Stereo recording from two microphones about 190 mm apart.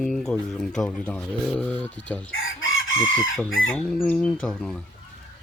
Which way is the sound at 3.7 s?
5° left (ahead or behind).